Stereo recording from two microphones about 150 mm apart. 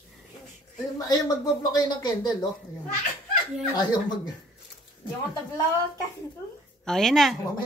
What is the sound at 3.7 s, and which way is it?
Speech, 25° left (ahead or behind).